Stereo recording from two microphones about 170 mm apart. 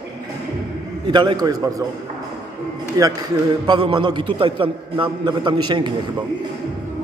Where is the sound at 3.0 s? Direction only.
20° right (ahead or behind).